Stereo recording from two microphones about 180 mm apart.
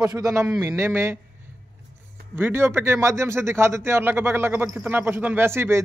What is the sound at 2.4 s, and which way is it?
A man's voice, 10° right (ahead or behind).